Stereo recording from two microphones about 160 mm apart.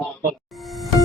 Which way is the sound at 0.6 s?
Centre (ahead or behind).